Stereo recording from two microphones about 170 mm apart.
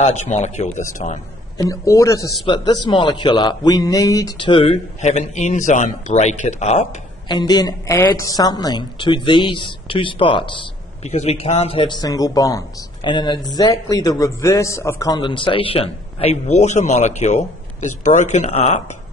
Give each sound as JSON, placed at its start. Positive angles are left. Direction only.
{"t": 0.0, "sound": "a man's voice", "side_deg": 45}
{"t": 1.6, "sound": "a woman's voice", "side_deg": 20}
{"t": 5.0, "sound": "a man's voice", "side_deg": 45}
{"t": 7.2, "sound": "a woman's voice", "side_deg": 25}